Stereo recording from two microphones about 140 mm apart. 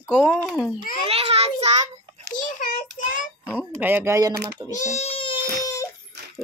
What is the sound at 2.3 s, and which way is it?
Child singing, 65° left (ahead or behind).